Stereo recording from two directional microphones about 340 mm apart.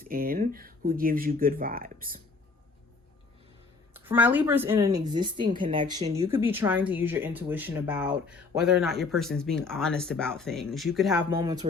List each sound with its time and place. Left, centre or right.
0.0 s speech: right
3.9 s speech: centre